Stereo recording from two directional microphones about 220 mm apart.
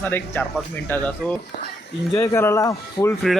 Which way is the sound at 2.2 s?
10° left (ahead or behind).